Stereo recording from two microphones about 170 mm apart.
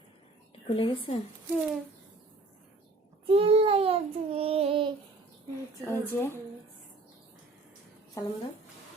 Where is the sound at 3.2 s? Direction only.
35° right (ahead or behind).